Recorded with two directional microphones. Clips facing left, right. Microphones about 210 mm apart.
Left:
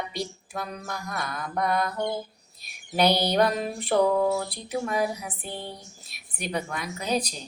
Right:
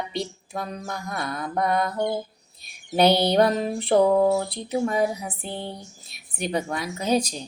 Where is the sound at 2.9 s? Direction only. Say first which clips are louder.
Right 4 dB; 25° right (ahead or behind).